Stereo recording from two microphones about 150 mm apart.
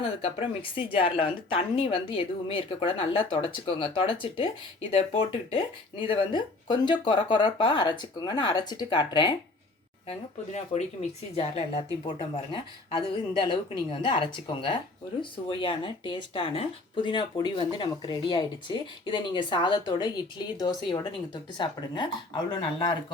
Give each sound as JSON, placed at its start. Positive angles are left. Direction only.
{"t": 0.2, "sound": "speech", "side_deg": 35}
{"t": 10.1, "sound": "speech", "side_deg": 45}